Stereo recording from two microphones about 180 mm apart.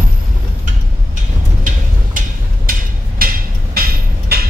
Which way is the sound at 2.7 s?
50° right (ahead or behind).